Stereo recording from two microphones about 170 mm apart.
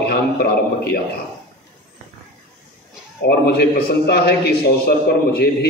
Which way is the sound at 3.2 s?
70° left (ahead or behind).